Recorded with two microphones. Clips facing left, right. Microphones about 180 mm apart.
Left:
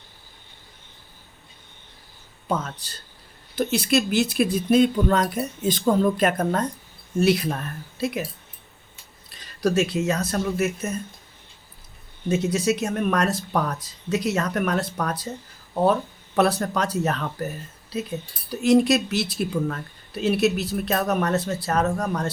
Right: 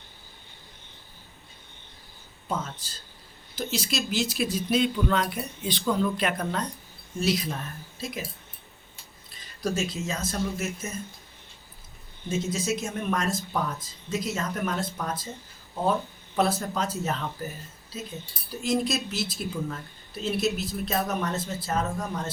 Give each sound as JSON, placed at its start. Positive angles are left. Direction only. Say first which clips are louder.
{"t": 2.5, "sound": "speech", "louder": "left 5 dB", "side_deg": 65}
{"t": 7.2, "sound": "speech", "louder": "left 7 dB", "side_deg": 60}
{"t": 9.6, "sound": "speech", "louder": "left 7 dB", "side_deg": 70}
{"t": 12.3, "sound": "speech", "louder": "left 6 dB", "side_deg": 65}